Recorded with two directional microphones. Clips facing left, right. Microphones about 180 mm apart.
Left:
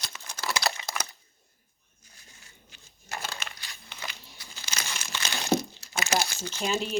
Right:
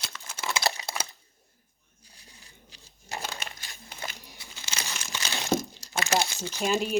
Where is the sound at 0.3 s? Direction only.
25° right (ahead or behind).